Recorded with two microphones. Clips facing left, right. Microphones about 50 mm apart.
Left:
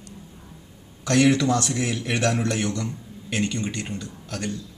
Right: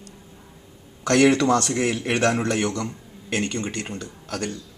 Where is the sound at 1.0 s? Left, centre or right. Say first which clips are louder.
Right 2 dB; right.